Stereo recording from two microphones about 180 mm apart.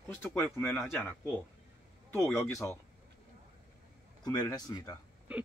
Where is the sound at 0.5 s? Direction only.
15° left (ahead or behind).